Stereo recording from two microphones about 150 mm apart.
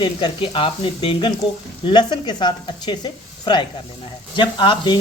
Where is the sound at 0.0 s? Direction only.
35° left (ahead or behind).